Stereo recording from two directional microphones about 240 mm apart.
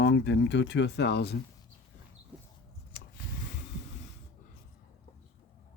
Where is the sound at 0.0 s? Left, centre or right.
Left.